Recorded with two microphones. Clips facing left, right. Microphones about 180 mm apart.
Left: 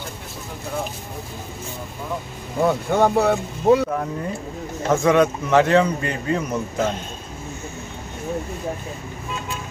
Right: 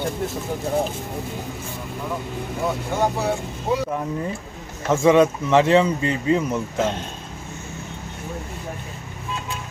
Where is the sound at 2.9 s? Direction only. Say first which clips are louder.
Left 5 dB; 60° left (ahead or behind).